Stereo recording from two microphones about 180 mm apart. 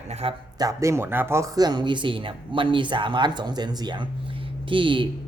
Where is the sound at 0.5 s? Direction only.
20° right (ahead or behind).